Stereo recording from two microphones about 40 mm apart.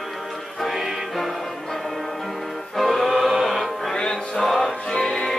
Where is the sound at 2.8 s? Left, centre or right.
Centre.